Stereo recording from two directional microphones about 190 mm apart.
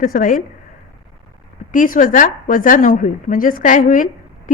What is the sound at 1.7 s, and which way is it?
A woman's voice, 45° left (ahead or behind).